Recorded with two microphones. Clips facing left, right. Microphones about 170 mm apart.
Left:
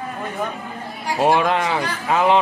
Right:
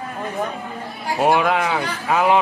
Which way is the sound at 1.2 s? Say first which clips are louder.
Even; 5° right (ahead or behind).